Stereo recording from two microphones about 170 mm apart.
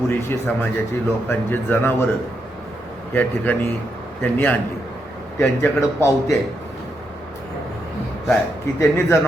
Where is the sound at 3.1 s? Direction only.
10° left (ahead or behind).